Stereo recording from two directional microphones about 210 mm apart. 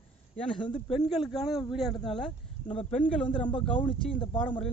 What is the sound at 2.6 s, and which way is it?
Speech, 30° left (ahead or behind).